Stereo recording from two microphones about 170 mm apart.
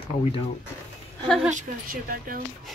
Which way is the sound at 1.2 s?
Centre (ahead or behind).